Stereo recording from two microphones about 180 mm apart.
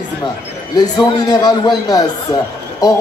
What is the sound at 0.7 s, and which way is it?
A man's voice, 20° left (ahead or behind).